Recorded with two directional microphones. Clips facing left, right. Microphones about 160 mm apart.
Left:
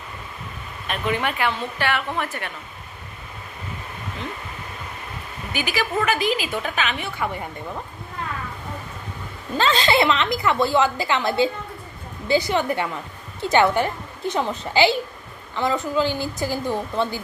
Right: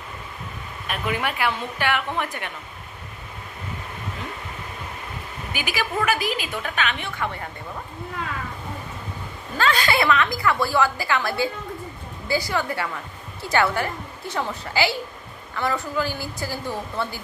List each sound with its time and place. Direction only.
0.8 s speech: 10° right (ahead or behind)
5.5 s a woman's voice: 10° right (ahead or behind); by 7.2 s 5° left (ahead or behind)
9.6 s a woman's voice: 25° left (ahead or behind)